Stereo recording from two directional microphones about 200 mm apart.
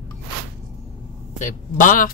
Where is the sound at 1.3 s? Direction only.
40° left (ahead or behind).